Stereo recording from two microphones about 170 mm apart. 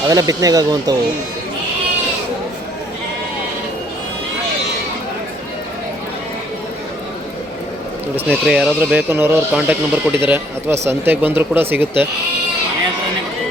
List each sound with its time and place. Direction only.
0.1 s speech: 20° right (ahead or behind)
8.3 s speech: centre (ahead or behind)